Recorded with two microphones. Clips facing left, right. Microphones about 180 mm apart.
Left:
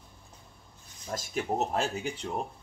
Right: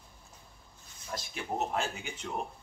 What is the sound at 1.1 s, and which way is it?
Speech, 40° left (ahead or behind).